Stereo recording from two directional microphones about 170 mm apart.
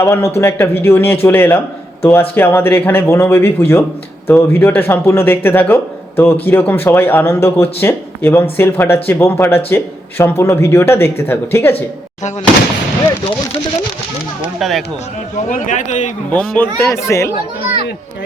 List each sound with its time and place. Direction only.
0.0 s speech: 15° left (ahead or behind)
14.6 s speech: centre (ahead or behind)
15.4 s a man's voice: 50° left (ahead or behind)
16.3 s speech: 15° left (ahead or behind)